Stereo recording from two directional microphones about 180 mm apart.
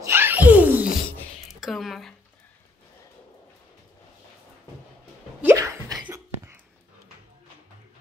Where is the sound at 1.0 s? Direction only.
5° left (ahead or behind).